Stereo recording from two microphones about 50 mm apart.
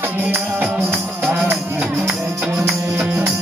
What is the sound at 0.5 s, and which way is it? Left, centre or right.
Music, centre.